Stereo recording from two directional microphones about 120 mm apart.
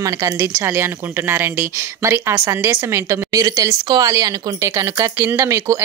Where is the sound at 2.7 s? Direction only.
25° right (ahead or behind).